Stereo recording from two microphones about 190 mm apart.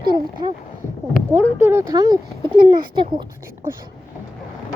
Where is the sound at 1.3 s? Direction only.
10° right (ahead or behind).